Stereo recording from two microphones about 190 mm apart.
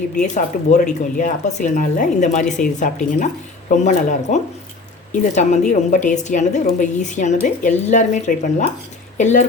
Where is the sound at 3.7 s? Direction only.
40° left (ahead or behind).